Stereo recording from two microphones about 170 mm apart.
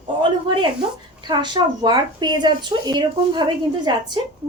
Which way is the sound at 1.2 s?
25° right (ahead or behind).